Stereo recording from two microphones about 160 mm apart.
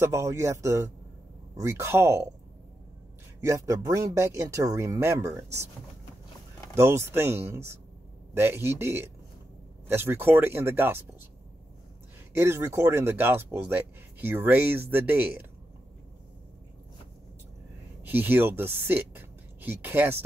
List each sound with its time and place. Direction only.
0.0 s speech: 20° right (ahead or behind)
3.3 s speech: 20° right (ahead or behind)
6.7 s speech: 15° right (ahead or behind)
12.4 s speech: 15° right (ahead or behind)
18.0 s speech: 10° right (ahead or behind)